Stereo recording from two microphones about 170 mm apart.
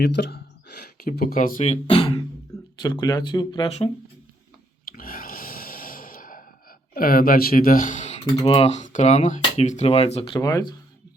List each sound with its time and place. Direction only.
0.0 s speech: 75° left (ahead or behind)
1.3 s speech: 45° left (ahead or behind); by 3.7 s 25° left (ahead or behind)
4.9 s a sound: 55° left (ahead or behind)
6.9 s speech: 60° left (ahead or behind)
8.3 s speech: 25° left (ahead or behind)
10.4 s speech: 20° left (ahead or behind)